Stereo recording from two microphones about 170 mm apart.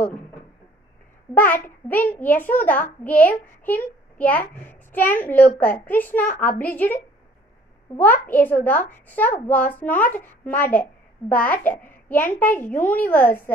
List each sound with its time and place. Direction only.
1.3 s a child's voice: 10° left (ahead or behind)
8.0 s a child's voice: 10° left (ahead or behind)